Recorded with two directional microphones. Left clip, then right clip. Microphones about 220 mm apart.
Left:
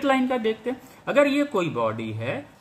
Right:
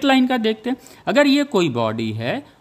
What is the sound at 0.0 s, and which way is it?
Speech, 50° right (ahead or behind).